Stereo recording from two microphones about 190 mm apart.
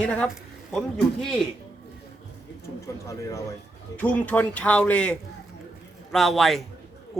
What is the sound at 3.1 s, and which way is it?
Speech, 15° left (ahead or behind).